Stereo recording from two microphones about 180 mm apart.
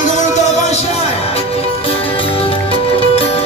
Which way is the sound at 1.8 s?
30° left (ahead or behind).